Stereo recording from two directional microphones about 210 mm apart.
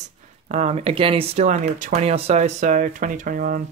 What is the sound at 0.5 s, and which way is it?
Speech, 30° right (ahead or behind).